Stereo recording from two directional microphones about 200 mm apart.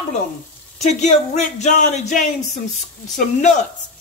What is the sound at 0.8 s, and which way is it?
Speech, 35° left (ahead or behind).